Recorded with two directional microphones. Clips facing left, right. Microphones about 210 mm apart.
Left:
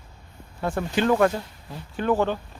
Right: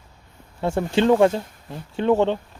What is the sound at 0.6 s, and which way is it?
Speech, 25° right (ahead or behind).